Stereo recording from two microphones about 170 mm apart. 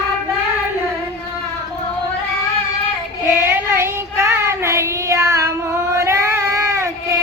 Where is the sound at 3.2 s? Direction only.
15° right (ahead or behind).